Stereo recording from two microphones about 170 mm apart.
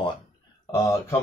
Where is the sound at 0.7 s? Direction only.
15° left (ahead or behind).